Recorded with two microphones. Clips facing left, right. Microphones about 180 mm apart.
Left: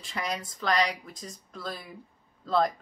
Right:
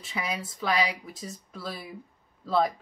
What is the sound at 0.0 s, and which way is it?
A woman's voice, 5° right (ahead or behind).